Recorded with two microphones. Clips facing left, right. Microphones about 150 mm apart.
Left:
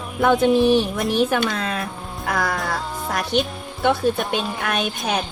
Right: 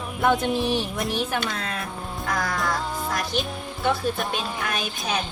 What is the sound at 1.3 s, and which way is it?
Speech, 90° left.